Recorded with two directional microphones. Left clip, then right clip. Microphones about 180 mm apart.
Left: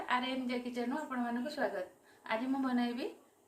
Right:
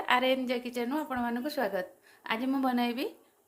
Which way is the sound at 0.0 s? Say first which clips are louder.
Right 8 dB; 60° right (ahead or behind).